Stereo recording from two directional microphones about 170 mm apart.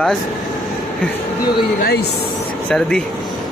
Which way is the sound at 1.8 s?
65° left (ahead or behind).